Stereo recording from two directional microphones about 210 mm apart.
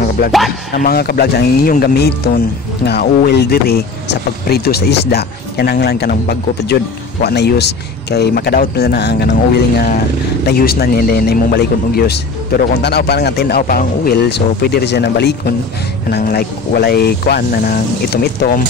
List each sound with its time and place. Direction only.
0.7 s speech: 45° left (ahead or behind)
10.4 s speech: 50° left (ahead or behind)